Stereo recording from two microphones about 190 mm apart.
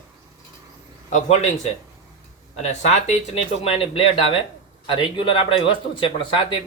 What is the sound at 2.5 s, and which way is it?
A man's voice, 35° left (ahead or behind).